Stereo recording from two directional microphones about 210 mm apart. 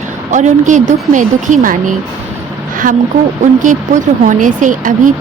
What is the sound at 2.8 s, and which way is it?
Speech, 40° right (ahead or behind).